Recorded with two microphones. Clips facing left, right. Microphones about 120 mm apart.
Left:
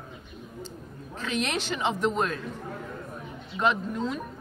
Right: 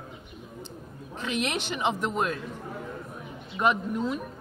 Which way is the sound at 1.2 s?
15° right (ahead or behind).